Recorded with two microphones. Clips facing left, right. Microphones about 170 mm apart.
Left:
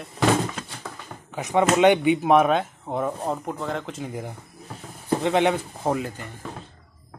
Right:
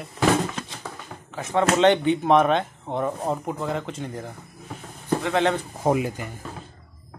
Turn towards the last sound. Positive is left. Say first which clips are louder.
# right 3 dB
turn(degrees=-10)  # may be behind; listen again after turning